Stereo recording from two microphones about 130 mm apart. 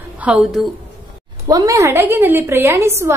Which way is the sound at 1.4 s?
25° right (ahead or behind).